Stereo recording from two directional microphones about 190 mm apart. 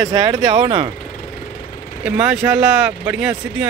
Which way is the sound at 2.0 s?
5° right (ahead or behind).